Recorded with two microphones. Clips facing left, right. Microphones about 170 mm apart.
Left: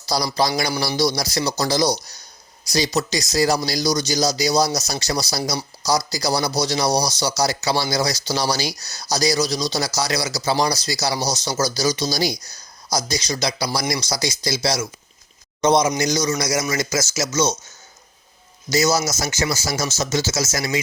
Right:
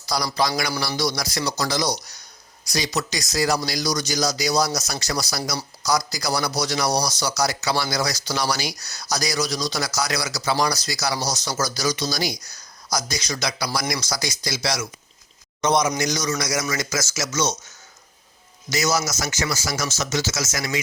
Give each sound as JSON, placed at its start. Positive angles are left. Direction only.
{"t": 0.0, "sound": "a sound", "side_deg": 30}
{"t": 0.3, "sound": "speech", "side_deg": 35}
{"t": 18.7, "sound": "speech", "side_deg": 30}